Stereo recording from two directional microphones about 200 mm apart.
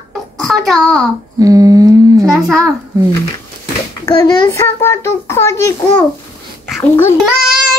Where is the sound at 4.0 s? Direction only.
20° left (ahead or behind).